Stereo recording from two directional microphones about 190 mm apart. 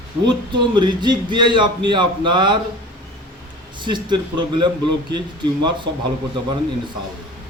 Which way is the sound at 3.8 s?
25° right (ahead or behind).